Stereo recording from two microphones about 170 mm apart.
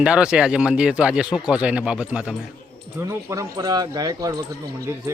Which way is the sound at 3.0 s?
20° right (ahead or behind).